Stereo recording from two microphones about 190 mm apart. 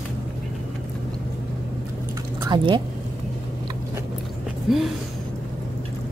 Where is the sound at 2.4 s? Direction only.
25° right (ahead or behind).